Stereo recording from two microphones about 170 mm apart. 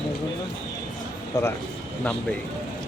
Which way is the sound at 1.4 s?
20° left (ahead or behind).